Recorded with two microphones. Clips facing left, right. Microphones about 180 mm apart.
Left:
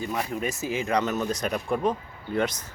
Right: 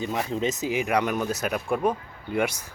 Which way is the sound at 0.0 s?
20° right (ahead or behind).